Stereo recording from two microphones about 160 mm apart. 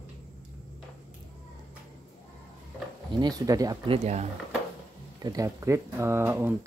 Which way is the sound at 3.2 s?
25° right (ahead or behind).